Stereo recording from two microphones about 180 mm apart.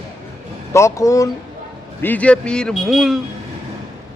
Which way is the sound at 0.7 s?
15° left (ahead or behind).